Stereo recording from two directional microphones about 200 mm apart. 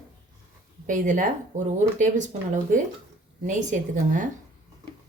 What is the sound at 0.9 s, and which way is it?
Speech, 40° right (ahead or behind).